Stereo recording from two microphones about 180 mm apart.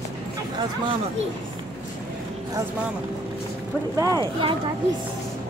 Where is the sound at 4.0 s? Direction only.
20° right (ahead or behind).